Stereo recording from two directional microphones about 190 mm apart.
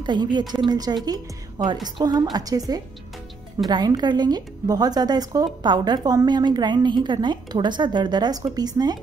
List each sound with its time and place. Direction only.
0.0 s a woman's voice: 25° right (ahead or behind)